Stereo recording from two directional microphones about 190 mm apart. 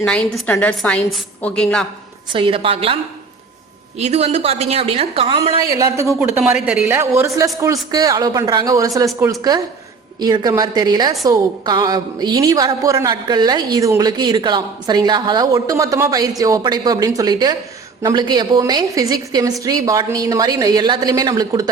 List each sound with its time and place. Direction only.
0.0 s a woman's voice: 5° left (ahead or behind)
2.3 s a woman's voice: 25° right (ahead or behind)
5.7 s a man's voice: 15° right (ahead or behind)
6.1 s a man's voice: 5° right (ahead or behind); by 21.7 s 20° right (ahead or behind)